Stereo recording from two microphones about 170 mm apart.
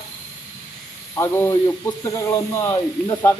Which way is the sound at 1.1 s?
15° left (ahead or behind).